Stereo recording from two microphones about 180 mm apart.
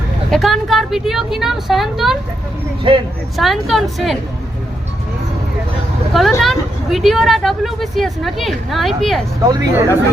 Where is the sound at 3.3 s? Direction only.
Centre (ahead or behind).